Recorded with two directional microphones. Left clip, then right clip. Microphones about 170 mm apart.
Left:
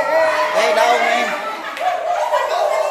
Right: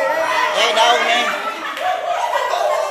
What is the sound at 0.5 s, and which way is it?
Music, 30° left (ahead or behind).